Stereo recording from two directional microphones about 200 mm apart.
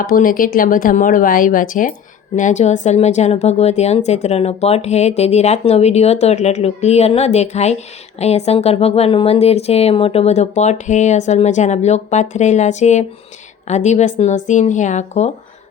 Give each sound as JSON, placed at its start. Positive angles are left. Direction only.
{"t": 0.0, "sound": "speech", "side_deg": 45}